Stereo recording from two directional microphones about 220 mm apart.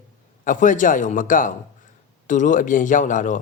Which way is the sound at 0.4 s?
35° left (ahead or behind).